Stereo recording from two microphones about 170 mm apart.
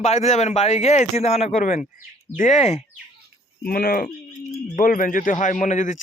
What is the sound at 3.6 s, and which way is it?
A man's voice, 60° left (ahead or behind).